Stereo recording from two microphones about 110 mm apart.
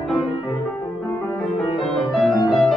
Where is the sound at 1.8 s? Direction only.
5° left (ahead or behind).